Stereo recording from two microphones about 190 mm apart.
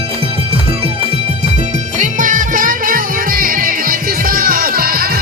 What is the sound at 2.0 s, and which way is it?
Music, 45° right (ahead or behind).